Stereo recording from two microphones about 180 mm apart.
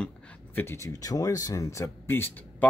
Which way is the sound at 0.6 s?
15° left (ahead or behind).